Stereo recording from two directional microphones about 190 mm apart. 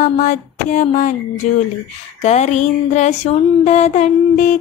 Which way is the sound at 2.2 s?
35° left (ahead or behind).